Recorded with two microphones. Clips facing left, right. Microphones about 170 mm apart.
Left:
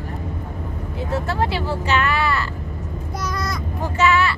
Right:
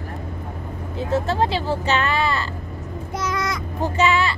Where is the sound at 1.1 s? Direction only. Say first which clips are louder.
Right 2 dB; 20° right (ahead or behind).